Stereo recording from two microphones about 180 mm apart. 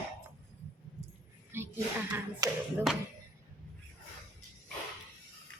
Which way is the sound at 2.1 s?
20° right (ahead or behind).